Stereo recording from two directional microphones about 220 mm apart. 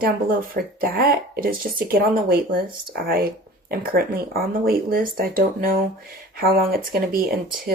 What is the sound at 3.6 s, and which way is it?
Speech, 40° right (ahead or behind).